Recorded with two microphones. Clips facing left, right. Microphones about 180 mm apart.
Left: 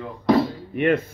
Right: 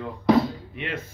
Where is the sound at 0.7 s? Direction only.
55° left (ahead or behind).